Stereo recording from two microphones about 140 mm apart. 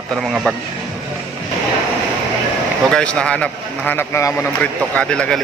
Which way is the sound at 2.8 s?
5° left (ahead or behind).